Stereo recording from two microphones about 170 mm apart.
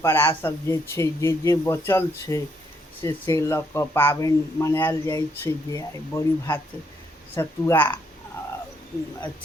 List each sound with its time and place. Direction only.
0.0 s speech: 15° left (ahead or behind)